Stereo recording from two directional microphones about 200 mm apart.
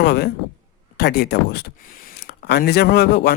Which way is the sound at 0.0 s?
55° left (ahead or behind).